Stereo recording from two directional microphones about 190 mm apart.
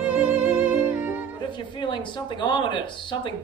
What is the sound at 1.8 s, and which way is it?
Speech, 25° left (ahead or behind).